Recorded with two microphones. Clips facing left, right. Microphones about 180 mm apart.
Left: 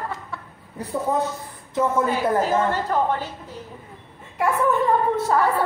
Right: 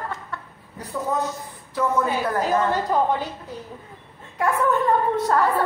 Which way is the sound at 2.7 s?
10° right (ahead or behind).